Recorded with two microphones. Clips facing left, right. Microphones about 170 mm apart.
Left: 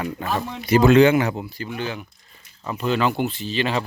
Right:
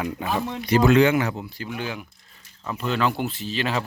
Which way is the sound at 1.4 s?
Centre (ahead or behind).